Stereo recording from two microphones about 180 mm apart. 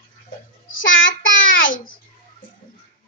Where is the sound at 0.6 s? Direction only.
50° left (ahead or behind).